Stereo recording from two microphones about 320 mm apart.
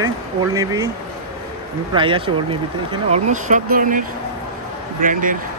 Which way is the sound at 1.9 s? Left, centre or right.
Centre.